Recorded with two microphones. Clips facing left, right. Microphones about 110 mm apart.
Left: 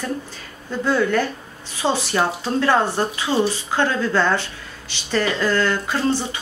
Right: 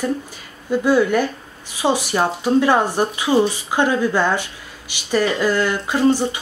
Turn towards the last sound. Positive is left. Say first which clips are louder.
# right 5 dB
turn(degrees=-15)  # may be behind; listen again after turning